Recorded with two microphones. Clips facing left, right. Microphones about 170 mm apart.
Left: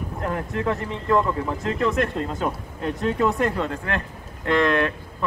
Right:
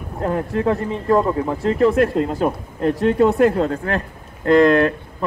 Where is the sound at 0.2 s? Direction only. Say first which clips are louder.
Right 7 dB; 30° right (ahead or behind).